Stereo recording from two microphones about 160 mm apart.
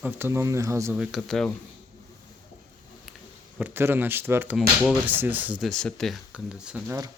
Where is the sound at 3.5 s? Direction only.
10° right (ahead or behind).